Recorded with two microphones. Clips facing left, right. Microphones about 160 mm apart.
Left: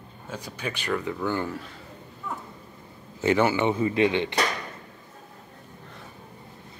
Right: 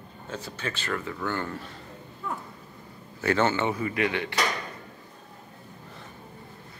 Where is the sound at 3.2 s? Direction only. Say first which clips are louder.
Left 3 dB; 15° left (ahead or behind).